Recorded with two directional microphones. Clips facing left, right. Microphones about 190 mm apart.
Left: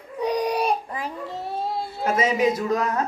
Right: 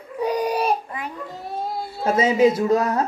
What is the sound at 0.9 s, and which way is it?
Child singing, 30° left (ahead or behind).